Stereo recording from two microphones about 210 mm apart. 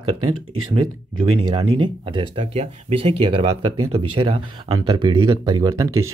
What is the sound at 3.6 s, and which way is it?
Speech, 90° right.